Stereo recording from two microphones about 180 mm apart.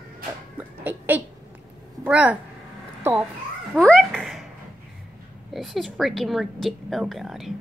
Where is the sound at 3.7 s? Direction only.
5° left (ahead or behind).